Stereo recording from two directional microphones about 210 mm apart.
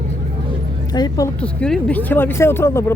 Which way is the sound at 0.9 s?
20° left (ahead or behind).